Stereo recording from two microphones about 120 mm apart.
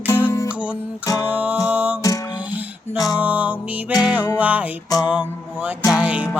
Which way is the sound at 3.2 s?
10° right (ahead or behind).